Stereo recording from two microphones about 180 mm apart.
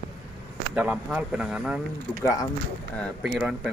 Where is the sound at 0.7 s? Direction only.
10° right (ahead or behind).